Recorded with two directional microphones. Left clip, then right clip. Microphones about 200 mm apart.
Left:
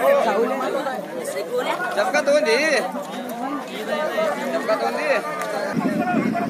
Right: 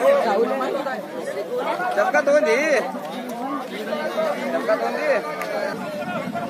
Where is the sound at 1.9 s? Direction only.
45° right (ahead or behind).